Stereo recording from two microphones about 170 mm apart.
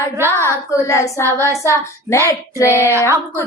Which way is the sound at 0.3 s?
15° right (ahead or behind).